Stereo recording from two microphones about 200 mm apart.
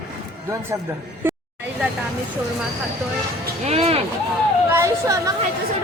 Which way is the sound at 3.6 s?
30° right (ahead or behind).